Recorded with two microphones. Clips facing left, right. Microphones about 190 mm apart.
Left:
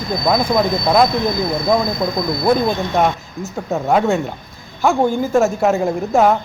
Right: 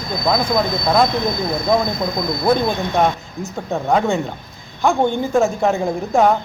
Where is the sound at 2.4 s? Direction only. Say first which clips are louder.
Left 1 dB; 5° left (ahead or behind).